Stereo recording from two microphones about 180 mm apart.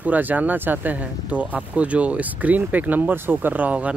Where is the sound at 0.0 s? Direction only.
10° right (ahead or behind).